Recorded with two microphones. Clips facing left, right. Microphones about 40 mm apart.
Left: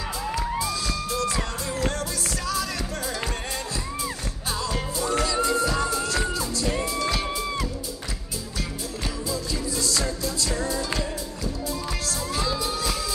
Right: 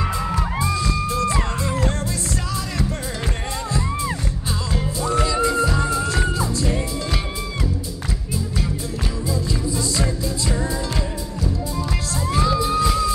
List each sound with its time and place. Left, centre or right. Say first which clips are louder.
0.4 s music: right 4 dB; right
5.2 s music: right 4 dB; right
10.2 s music: right 3 dB; right
12.1 s music: right 7 dB; right